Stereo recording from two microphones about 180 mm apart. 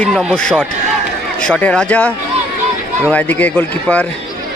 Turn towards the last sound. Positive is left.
turn(degrees=10)  # may be behind; listen again after turning